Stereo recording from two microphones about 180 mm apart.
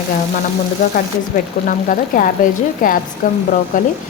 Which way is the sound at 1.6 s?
50° left (ahead or behind).